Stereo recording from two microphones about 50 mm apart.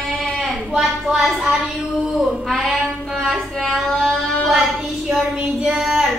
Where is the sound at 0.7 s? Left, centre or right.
Centre.